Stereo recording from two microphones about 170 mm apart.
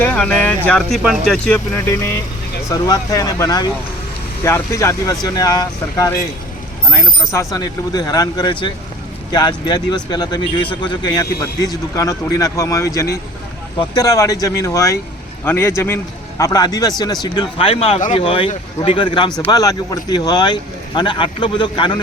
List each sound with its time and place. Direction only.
0.0 s speech: 5° left (ahead or behind)
2.6 s speech: 20° left (ahead or behind)